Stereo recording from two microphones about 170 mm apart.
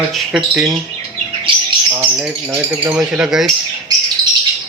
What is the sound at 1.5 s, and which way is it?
Bird, 30° right (ahead or behind).